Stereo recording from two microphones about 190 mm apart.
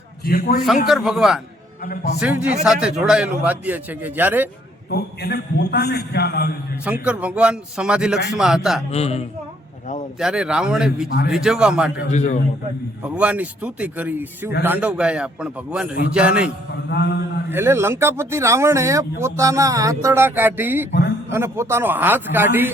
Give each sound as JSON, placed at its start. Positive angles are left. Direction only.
{"t": 0.3, "sound": "a man's voice", "side_deg": 50}
{"t": 0.9, "sound": "a man's voice", "side_deg": 0}
{"t": 1.8, "sound": "a man's voice", "side_deg": 50}
{"t": 2.1, "sound": "a man's voice", "side_deg": -5}
{"t": 4.9, "sound": "a man's voice", "side_deg": 60}
{"t": 6.8, "sound": "a man's voice", "side_deg": -5}
{"t": 8.9, "sound": "a man's voice", "side_deg": 35}
{"t": 10.2, "sound": "a man's voice", "side_deg": -5}
{"t": 11.9, "sound": "a man's voice", "side_deg": 40}
{"t": 13.0, "sound": "a man's voice", "side_deg": -5}
{"t": 16.9, "sound": "a man's voice", "side_deg": 60}
{"t": 17.5, "sound": "speech", "side_deg": -15}